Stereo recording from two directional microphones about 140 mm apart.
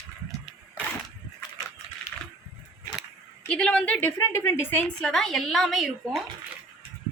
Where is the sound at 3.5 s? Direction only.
5° left (ahead or behind).